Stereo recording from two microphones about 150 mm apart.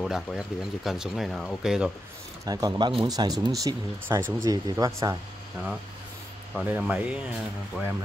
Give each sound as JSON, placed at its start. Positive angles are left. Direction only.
{"t": 0.0, "sound": "speech", "side_deg": 0}
{"t": 2.4, "sound": "speech", "side_deg": -25}
{"t": 6.5, "sound": "speech", "side_deg": -10}